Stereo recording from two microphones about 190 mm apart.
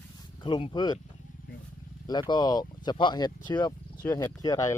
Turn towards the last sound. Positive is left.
turn(degrees=20)  # may be behind; listen again after turning